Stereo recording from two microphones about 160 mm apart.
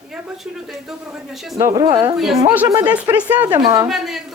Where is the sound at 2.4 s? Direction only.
10° right (ahead or behind).